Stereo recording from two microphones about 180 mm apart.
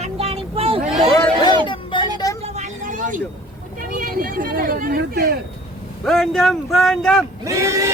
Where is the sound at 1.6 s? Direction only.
25° left (ahead or behind).